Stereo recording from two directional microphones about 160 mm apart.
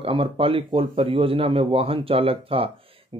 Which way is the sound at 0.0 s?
35° right (ahead or behind).